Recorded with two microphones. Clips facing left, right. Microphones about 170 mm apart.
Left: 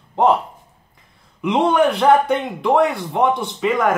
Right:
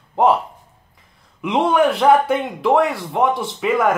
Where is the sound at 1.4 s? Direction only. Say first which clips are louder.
Even; centre (ahead or behind).